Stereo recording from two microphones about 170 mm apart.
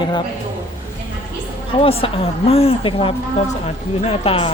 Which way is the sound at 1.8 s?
35° left (ahead or behind).